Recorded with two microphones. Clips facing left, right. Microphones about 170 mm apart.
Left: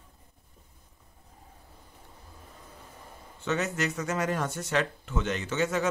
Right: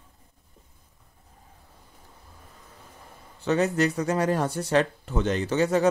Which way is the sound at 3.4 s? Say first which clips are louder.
Right 7 dB; 35° right (ahead or behind).